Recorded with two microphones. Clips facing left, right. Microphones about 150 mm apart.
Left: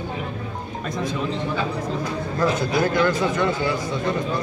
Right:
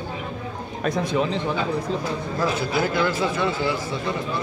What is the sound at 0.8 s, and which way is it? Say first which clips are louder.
Speech: right 3 dB; 70° right (ahead or behind).